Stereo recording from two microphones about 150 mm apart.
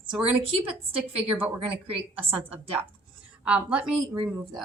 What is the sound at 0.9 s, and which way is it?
Speech, 40° right (ahead or behind).